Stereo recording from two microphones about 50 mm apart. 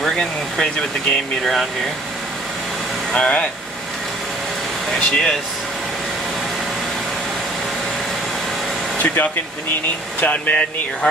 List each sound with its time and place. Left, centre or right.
0.0 s speech: centre
3.1 s speech: left
4.9 s speech: centre
8.9 s speech: left
10.5 s speech: left